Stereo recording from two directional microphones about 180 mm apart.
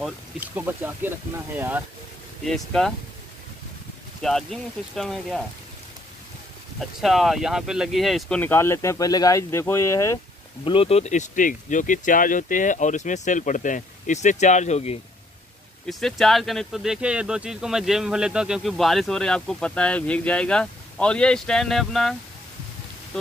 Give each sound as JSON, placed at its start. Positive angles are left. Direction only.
{"t": 0.4, "sound": "speech", "side_deg": -10}
{"t": 2.4, "sound": "speech", "side_deg": 5}
{"t": 4.2, "sound": "speech", "side_deg": 0}
{"t": 7.0, "sound": "speech", "side_deg": 0}
{"t": 10.6, "sound": "speech", "side_deg": 30}
{"t": 15.9, "sound": "speech", "side_deg": 0}